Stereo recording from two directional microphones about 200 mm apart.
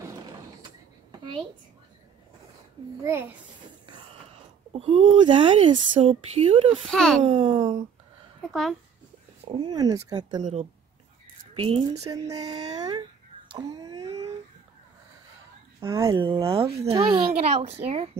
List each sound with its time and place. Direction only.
3.0 s speech: 10° right (ahead or behind)
4.7 s speech: 25° right (ahead or behind)
6.9 s a child's voice: 5° left (ahead or behind)
7.2 s speech: 25° right (ahead or behind)
9.4 s speech: 20° right (ahead or behind)
10.4 s speech: 35° right (ahead or behind)
12.0 s speech: 15° right (ahead or behind)
15.8 s speech: 15° right (ahead or behind); by 18.1 s 30° right (ahead or behind)